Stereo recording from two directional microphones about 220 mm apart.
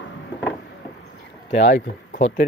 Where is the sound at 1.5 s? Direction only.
55° left (ahead or behind).